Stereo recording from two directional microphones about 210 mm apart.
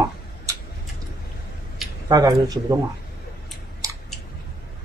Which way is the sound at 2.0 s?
20° right (ahead or behind).